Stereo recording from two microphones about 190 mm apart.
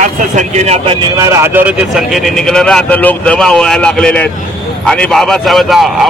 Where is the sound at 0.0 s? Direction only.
40° right (ahead or behind).